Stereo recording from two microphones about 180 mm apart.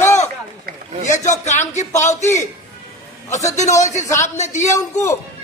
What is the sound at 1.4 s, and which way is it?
Speech, 40° left (ahead or behind).